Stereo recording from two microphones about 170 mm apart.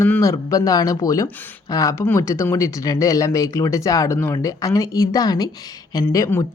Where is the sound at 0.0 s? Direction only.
15° left (ahead or behind).